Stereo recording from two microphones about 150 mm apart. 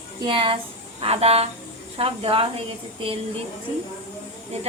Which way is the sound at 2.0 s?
40° right (ahead or behind).